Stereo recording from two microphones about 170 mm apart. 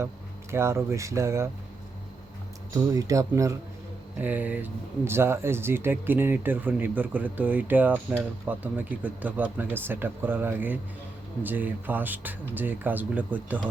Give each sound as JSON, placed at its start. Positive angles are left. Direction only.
{"t": 0.5, "sound": "speech", "side_deg": -15}
{"t": 2.7, "sound": "speech", "side_deg": -20}